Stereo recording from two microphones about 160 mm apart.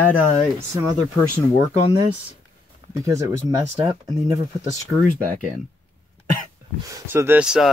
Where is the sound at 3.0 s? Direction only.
20° right (ahead or behind).